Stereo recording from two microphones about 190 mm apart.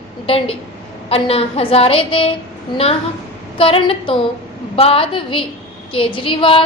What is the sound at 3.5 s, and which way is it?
A woman's voice, 30° left (ahead or behind).